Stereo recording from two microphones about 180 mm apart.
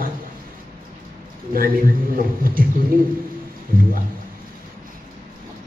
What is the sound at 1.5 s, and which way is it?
A man's voice, 55° right (ahead or behind).